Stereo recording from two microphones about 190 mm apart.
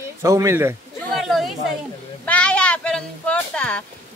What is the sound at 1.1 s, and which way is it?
Chatter, centre (ahead or behind).